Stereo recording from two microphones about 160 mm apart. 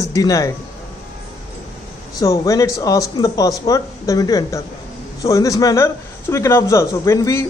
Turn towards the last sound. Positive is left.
turn(degrees=15)  # may be behind; listen again after turning